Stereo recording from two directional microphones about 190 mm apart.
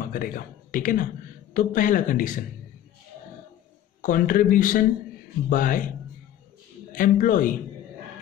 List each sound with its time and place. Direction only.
0.0 s speech: 45° left (ahead or behind)
4.0 s speech: 45° left (ahead or behind)
6.9 s speech: 45° left (ahead or behind)